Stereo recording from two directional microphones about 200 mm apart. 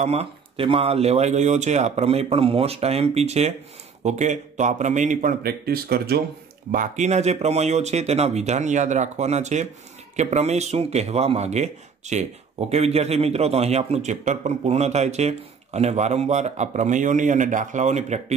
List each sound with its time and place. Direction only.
0.0 s a man's voice: 30° right (ahead or behind); by 6.2 s 50° right (ahead or behind)
6.7 s a man's voice: 40° right (ahead or behind)